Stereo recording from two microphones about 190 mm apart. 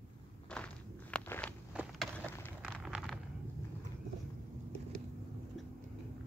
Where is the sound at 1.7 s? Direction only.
Centre (ahead or behind).